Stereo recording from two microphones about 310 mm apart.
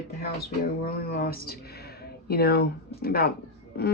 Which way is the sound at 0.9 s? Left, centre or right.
Left.